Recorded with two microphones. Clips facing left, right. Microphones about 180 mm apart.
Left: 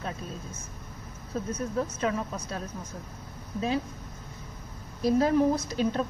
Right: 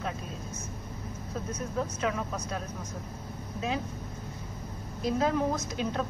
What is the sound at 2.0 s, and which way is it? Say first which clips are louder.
Speech: left 2 dB; 35° left (ahead or behind).